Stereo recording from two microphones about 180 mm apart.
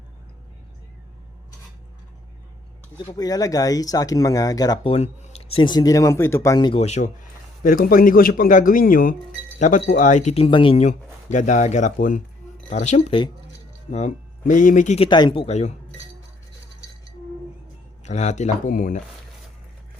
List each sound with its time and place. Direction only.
3.1 s speech: 20° left (ahead or behind); by 7.1 s 40° left (ahead or behind)
7.6 s speech: 50° left (ahead or behind)
18.0 s speech: 40° left (ahead or behind)